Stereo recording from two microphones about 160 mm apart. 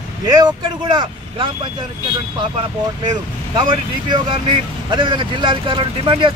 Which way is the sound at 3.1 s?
25° right (ahead or behind).